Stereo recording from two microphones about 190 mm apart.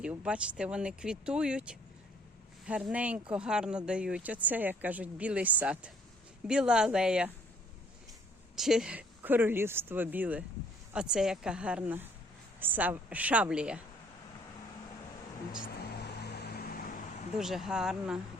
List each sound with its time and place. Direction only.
0.0 s speech: 5° right (ahead or behind)
8.5 s speech: centre (ahead or behind)
15.5 s music: 50° left (ahead or behind)
17.3 s speech: centre (ahead or behind)